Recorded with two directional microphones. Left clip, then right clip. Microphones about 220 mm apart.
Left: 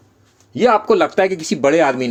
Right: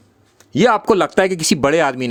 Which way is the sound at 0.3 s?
35° right (ahead or behind).